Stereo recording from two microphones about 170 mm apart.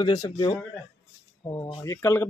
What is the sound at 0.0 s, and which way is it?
A man's voice, 25° left (ahead or behind).